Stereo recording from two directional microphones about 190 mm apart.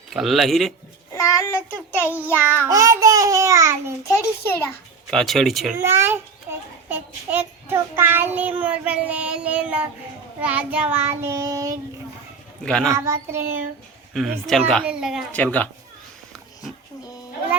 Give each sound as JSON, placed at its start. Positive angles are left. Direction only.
{"t": 0.1, "sound": "speech", "side_deg": 0}
{"t": 1.1, "sound": "child singing", "side_deg": 15}
{"t": 2.6, "sound": "child singing", "side_deg": -20}
{"t": 4.0, "sound": "child singing", "side_deg": 15}
{"t": 5.1, "sound": "speech", "side_deg": 0}
{"t": 5.7, "sound": "a child's voice", "side_deg": -15}
{"t": 10.4, "sound": "child singing", "side_deg": -10}
{"t": 12.6, "sound": "speech", "side_deg": 5}
{"t": 12.9, "sound": "child singing", "side_deg": -15}
{"t": 14.1, "sound": "speech", "side_deg": 0}